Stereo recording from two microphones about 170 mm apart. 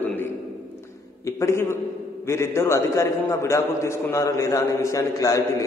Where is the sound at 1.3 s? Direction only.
15° left (ahead or behind).